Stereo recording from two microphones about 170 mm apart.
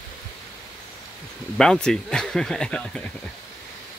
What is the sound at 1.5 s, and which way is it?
Speech, 5° left (ahead or behind).